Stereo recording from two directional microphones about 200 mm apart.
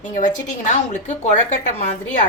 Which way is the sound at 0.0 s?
40° left (ahead or behind).